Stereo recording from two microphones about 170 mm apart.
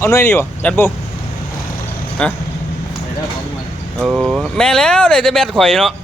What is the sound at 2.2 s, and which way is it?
Speech, 5° left (ahead or behind).